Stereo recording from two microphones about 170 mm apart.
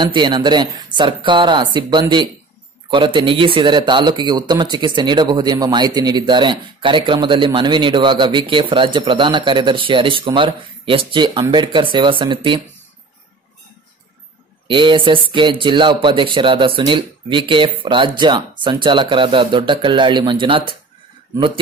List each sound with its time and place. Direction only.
0.0 s speech: 25° right (ahead or behind)
14.7 s speech: 30° right (ahead or behind)